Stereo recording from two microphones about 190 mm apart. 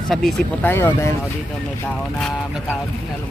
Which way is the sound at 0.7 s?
15° left (ahead or behind).